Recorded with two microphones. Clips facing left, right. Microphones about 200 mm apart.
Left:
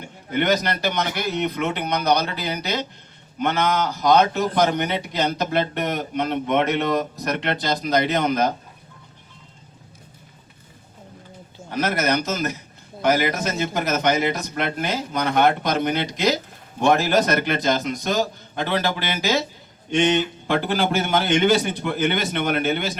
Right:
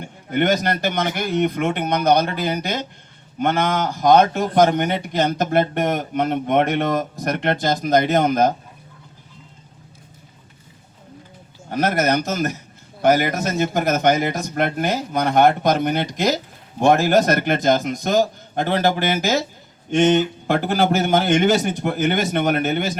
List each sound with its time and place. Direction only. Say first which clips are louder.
0.3 s speech: right 2 dB; 50° right (ahead or behind)
11.7 s speech: right 3 dB; 50° right (ahead or behind)